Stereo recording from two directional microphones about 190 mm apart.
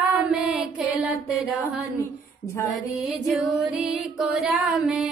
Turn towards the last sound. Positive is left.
turn(degrees=-5)  # may be behind; listen again after turning